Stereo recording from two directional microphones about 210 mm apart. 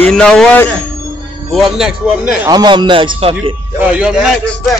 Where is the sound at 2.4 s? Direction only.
20° right (ahead or behind).